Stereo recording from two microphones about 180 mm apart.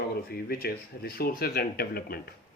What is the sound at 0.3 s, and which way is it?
Speech, 60° left (ahead or behind).